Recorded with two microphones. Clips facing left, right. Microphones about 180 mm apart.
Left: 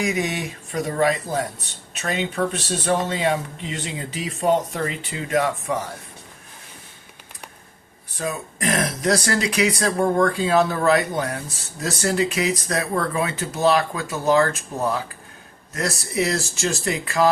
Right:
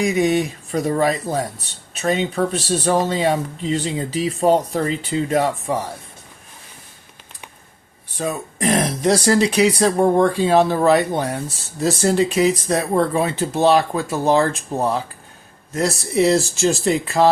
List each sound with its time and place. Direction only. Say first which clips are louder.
0.0 s speech: right 7 dB; 30° right (ahead or behind)
8.1 s speech: right 3 dB; 30° right (ahead or behind)